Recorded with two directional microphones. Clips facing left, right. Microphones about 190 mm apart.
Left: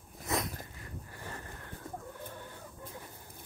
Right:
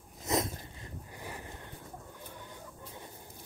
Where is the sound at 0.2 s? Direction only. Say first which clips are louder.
Right 3 dB; 25° right (ahead or behind).